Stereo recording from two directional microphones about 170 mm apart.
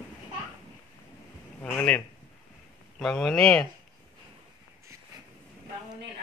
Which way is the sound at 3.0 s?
5° left (ahead or behind).